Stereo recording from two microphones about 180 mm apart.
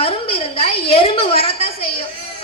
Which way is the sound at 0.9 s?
30° left (ahead or behind).